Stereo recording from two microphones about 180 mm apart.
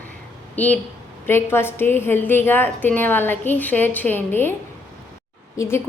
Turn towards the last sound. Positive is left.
turn(degrees=15)  # may be behind; listen again after turning